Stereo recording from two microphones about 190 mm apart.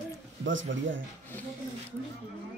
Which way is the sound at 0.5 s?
80° right.